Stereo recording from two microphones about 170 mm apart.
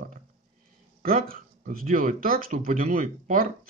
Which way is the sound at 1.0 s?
55° right (ahead or behind).